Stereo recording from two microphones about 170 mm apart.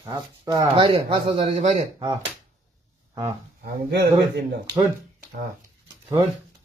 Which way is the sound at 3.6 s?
80° right.